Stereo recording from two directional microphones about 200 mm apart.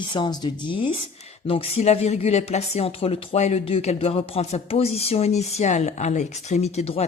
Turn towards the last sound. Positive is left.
turn(degrees=30)  # may be behind; listen again after turning